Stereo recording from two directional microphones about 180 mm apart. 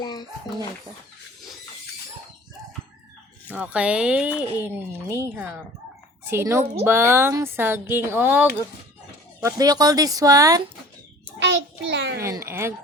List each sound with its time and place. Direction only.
0.0 s speech: 25° left (ahead or behind)
3.5 s speech: 5° right (ahead or behind)
11.3 s a child's voice: 85° right
12.2 s speech: 15° right (ahead or behind)